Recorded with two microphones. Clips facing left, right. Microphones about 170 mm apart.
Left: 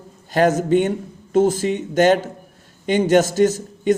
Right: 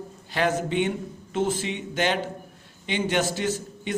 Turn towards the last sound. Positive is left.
turn(degrees=45)  # may be behind; listen again after turning